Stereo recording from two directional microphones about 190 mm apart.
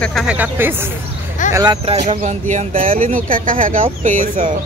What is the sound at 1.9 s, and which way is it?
Speech, 40° right (ahead or behind).